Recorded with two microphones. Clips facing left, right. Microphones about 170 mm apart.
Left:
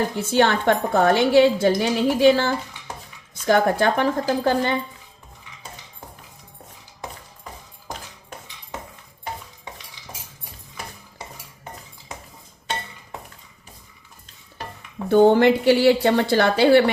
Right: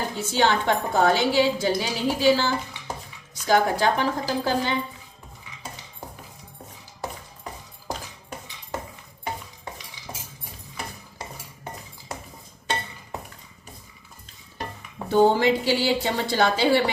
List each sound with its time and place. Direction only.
0.2 s a woman's voice: 55° left (ahead or behind)
15.1 s a woman's voice: 60° left (ahead or behind)